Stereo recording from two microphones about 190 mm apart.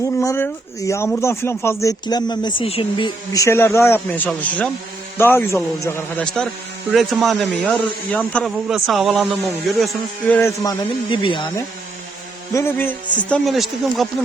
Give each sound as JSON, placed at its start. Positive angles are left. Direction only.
{"t": 0.0, "sound": "speech", "side_deg": 15}
{"t": 3.3, "sound": "speech", "side_deg": 15}
{"t": 12.5, "sound": "speech", "side_deg": 10}